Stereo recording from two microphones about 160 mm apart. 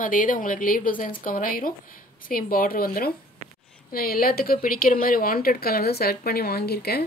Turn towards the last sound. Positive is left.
turn(degrees=80)